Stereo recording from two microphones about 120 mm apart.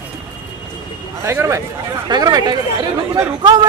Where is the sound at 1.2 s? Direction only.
25° right (ahead or behind).